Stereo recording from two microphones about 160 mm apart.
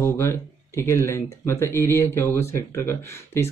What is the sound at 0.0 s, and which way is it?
Speech, 15° left (ahead or behind).